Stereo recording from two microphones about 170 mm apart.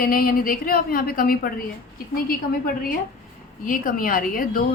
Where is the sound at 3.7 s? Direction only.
55° left (ahead or behind).